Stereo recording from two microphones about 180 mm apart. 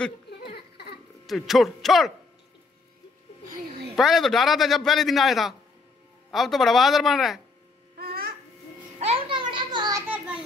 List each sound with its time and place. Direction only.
0.3 s a sound: 60° left (ahead or behind)
1.2 s a man's voice: centre (ahead or behind)
3.9 s a man's voice: centre (ahead or behind)
8.0 s babbling: 55° right (ahead or behind)
9.0 s children playing: 30° right (ahead or behind)
10.0 s a sound: 10° right (ahead or behind)